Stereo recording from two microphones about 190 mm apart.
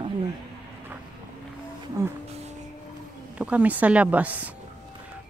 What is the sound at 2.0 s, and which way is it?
Speech, 15° right (ahead or behind).